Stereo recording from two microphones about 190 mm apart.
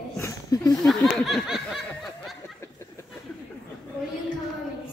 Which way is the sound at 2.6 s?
15° left (ahead or behind).